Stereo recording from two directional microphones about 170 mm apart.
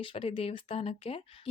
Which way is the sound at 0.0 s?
30° left (ahead or behind).